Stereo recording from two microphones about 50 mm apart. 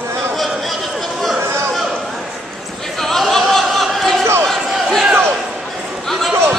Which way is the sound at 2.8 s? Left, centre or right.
Centre.